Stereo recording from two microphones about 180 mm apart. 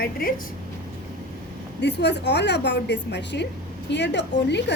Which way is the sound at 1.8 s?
70° left (ahead or behind).